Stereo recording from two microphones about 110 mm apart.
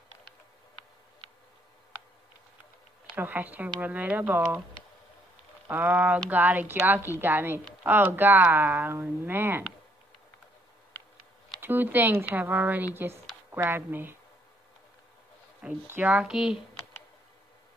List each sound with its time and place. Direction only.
3.2 s speech: 15° right (ahead or behind)
5.7 s speech: 15° right (ahead or behind)
11.6 s speech: 20° right (ahead or behind)
15.6 s speech: 15° right (ahead or behind)